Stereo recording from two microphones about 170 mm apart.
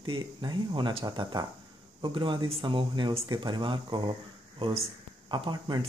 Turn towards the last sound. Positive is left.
turn(degrees=-25)  # may be behind; listen again after turning